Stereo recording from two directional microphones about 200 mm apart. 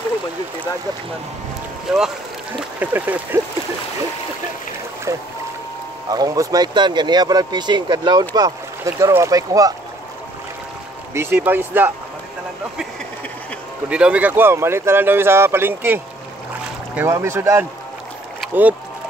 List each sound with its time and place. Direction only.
1.9 s speech: centre (ahead or behind)
6.0 s speech: 20° right (ahead or behind)
11.1 s speech: 10° right (ahead or behind)
13.8 s speech: 5° right (ahead or behind)